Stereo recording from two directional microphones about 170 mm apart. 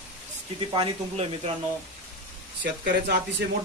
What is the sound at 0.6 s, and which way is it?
Speech, 35° right (ahead or behind).